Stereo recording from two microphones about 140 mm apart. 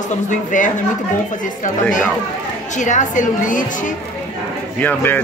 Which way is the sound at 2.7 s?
60° left (ahead or behind).